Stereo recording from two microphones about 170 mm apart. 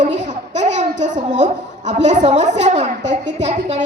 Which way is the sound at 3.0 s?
90° right.